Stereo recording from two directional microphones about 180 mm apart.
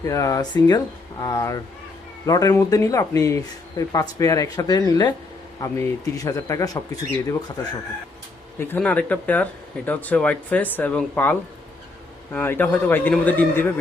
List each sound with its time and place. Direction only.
0.0 s speech: 20° left (ahead or behind)
8.5 s speech: 10° left (ahead or behind)